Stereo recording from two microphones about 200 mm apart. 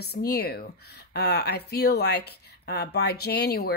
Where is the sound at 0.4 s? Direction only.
50° left (ahead or behind).